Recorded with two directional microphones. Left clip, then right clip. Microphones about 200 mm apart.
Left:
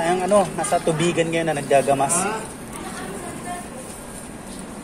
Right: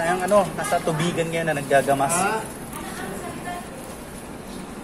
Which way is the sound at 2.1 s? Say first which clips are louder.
Right 1 dB; 45° right (ahead or behind).